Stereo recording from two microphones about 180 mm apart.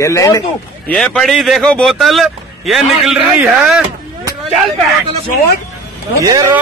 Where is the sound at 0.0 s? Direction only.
15° left (ahead or behind).